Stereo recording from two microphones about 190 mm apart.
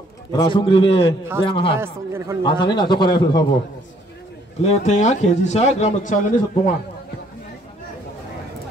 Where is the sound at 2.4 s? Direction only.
25° left (ahead or behind).